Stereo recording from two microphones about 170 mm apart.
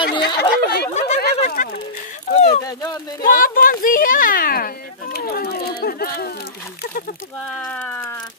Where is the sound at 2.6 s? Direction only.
20° left (ahead or behind).